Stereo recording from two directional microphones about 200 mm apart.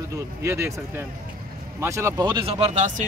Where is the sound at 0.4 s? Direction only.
15° right (ahead or behind).